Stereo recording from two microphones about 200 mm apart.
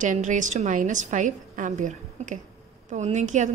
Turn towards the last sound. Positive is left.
turn(degrees=-35)  # may be behind; listen again after turning